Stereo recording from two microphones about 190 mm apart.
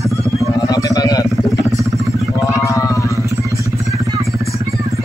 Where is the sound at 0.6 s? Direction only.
20° left (ahead or behind).